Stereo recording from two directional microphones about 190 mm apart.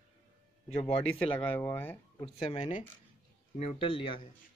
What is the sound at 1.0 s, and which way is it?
Speech, 5° left (ahead or behind).